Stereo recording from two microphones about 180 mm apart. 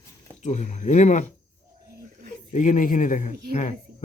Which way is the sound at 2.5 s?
45° left (ahead or behind).